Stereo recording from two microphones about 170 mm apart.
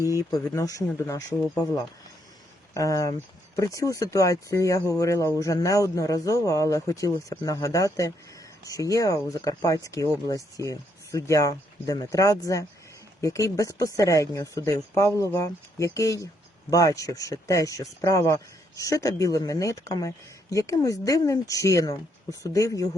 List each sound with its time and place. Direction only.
0.0 s speech: 15° right (ahead or behind)
0.3 s speech: 20° left (ahead or behind)
2.7 s speech: 20° left (ahead or behind)